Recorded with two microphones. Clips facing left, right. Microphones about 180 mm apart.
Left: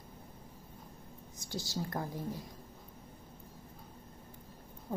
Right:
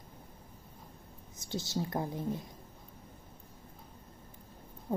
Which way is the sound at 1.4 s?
20° right (ahead or behind).